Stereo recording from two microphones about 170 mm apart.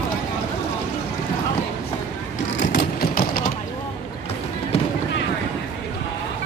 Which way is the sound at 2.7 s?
60° left (ahead or behind).